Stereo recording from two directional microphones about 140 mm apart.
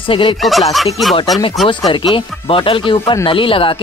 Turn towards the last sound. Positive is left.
turn(degrees=40)  # may be behind; listen again after turning